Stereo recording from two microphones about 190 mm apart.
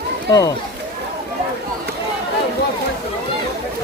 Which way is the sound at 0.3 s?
20° left (ahead or behind).